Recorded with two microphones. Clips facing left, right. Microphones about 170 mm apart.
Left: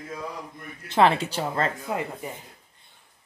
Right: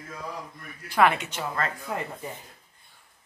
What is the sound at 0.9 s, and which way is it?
Speech, 25° left (ahead or behind).